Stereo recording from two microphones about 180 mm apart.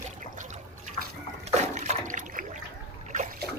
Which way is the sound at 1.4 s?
40° right (ahead or behind).